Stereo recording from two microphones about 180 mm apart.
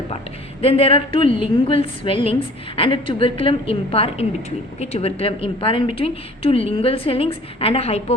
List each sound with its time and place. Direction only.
0.6 s a woman's voice: 30° left (ahead or behind)